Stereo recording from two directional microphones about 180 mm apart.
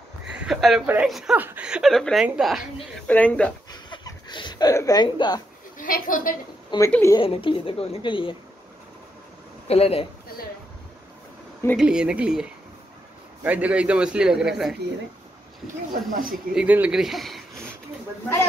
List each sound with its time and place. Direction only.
0.3 s a sound: centre (ahead or behind)
0.8 s speech: 5° right (ahead or behind)
3.1 s speech: 10° left (ahead or behind)
3.9 s a sound: 25° left (ahead or behind)
5.8 s a woman's voice: 50° left (ahead or behind)
6.9 s speech: 15° left (ahead or behind)
7.2 s a woman's voice: 30° left (ahead or behind)
9.7 s speech: 35° left (ahead or behind)
11.7 s a man's voice: 5° right (ahead or behind)
14.8 s speech: 70° right (ahead or behind)
15.6 s speech: 50° right (ahead or behind)
16.5 s speech: 10° right (ahead or behind)